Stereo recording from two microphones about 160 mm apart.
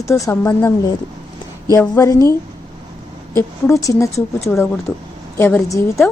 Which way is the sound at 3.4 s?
20° left (ahead or behind).